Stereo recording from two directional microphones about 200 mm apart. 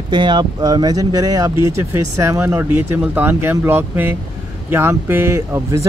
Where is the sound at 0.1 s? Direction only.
25° right (ahead or behind).